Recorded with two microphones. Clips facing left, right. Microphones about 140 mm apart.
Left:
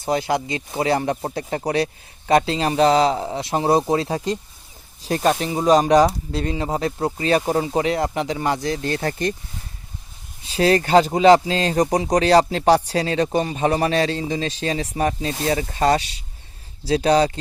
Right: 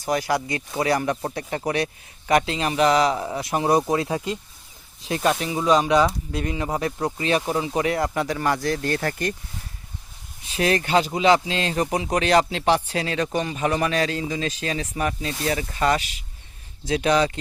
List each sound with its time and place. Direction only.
0.0 s speech: 25° left (ahead or behind)
7.7 s speech: 25° left (ahead or behind)
10.4 s speech: 30° left (ahead or behind)